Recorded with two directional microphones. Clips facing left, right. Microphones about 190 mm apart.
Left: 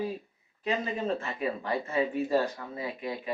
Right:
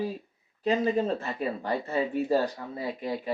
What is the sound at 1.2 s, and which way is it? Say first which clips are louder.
Speech: right 1 dB; 35° right (ahead or behind).